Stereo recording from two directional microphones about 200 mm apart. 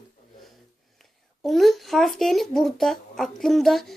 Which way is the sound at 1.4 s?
Centre (ahead or behind).